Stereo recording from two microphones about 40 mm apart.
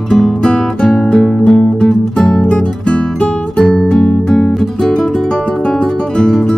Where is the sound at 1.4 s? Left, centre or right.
Left.